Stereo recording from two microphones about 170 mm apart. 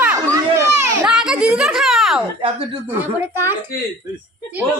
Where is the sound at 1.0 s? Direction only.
5° right (ahead or behind).